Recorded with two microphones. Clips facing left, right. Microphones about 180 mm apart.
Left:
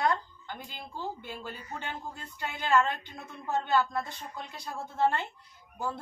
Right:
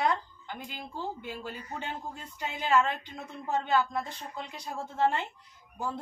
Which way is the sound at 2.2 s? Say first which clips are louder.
Right 1 dB; 15° right (ahead or behind).